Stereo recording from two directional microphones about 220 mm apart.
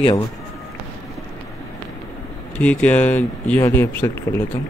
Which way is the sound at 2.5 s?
5° left (ahead or behind).